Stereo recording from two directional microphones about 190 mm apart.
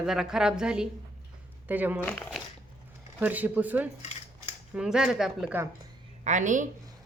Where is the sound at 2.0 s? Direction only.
10° left (ahead or behind).